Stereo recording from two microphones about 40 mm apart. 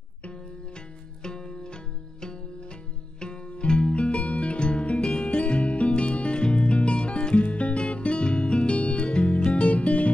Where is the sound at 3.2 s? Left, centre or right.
Left.